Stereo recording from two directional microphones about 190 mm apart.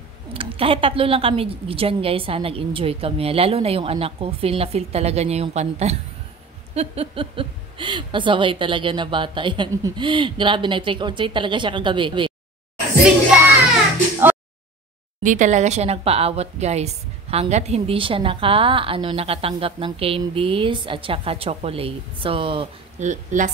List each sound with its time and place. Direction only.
0.3 s a woman's voice: 30° right (ahead or behind)
15.2 s a woman's voice: 40° right (ahead or behind)
23.0 s a woman's voice: 40° right (ahead or behind)